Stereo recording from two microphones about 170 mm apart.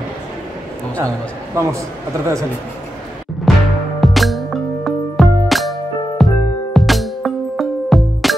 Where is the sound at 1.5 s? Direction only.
15° right (ahead or behind).